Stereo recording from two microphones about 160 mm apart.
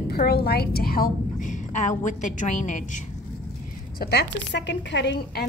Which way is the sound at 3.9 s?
85° left.